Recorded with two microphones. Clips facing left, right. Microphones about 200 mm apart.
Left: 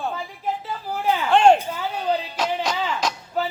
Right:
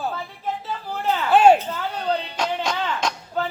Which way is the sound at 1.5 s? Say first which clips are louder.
Even; 10° left (ahead or behind).